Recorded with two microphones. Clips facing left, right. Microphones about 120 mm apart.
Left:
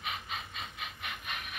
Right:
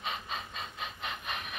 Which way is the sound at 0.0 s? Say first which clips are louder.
Right 2 dB; 30° right (ahead or behind).